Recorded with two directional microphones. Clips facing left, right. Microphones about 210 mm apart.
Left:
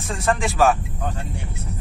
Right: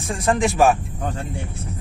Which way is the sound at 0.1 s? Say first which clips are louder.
Right 3 dB; 20° right (ahead or behind).